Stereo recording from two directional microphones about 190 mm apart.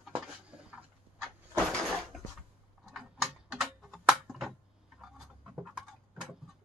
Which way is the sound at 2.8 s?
Centre (ahead or behind).